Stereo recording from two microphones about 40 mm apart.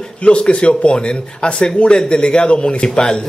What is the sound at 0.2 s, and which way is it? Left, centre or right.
Speech, left.